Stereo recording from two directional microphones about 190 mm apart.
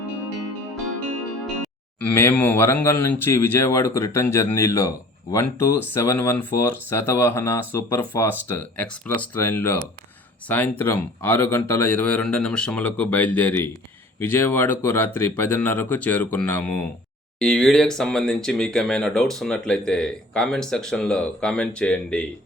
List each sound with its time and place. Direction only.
1.6 s speech: 10° left (ahead or behind)